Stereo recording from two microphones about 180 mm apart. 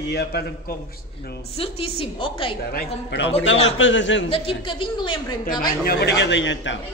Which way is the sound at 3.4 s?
90° left.